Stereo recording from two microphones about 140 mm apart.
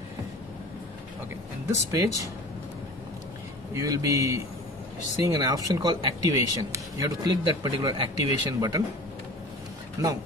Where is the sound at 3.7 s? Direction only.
25° right (ahead or behind).